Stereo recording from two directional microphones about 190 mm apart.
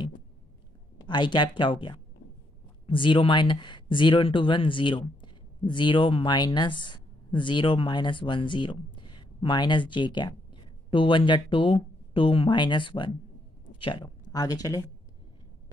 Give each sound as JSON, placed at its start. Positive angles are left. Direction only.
{"t": 1.0, "sound": "speech", "side_deg": 25}